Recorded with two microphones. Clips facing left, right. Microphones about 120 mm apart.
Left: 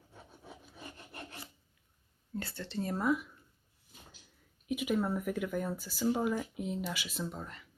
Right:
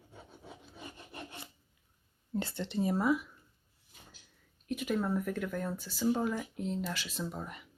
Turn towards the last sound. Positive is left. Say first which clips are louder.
# right 1 dB
turn(degrees=-10)  # may be behind; listen again after turning